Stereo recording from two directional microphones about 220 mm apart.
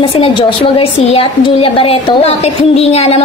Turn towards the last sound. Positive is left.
turn(degrees=30)  # may be behind; listen again after turning